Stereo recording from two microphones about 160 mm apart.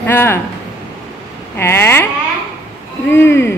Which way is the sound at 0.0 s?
15° left (ahead or behind).